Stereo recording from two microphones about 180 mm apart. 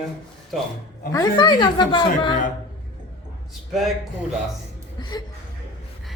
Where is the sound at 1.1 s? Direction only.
20° left (ahead or behind).